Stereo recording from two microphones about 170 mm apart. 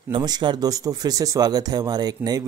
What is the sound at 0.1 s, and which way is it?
Speech, 25° right (ahead or behind).